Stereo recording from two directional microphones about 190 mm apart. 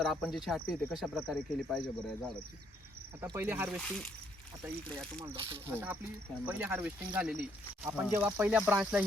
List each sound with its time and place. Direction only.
0.0 s speech: centre (ahead or behind)
3.2 s speech: 10° right (ahead or behind)
3.8 s speech: centre (ahead or behind)
5.1 s speech: 25° right (ahead or behind)
5.7 s speech: 10° right (ahead or behind)